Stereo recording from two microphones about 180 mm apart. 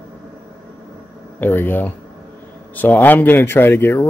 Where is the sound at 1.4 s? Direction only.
10° left (ahead or behind).